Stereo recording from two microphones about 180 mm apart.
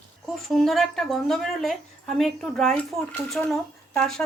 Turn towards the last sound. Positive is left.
turn(degrees=5)  # may be behind; listen again after turning